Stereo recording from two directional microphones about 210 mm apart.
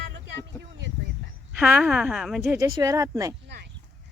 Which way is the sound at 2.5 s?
15° right (ahead or behind).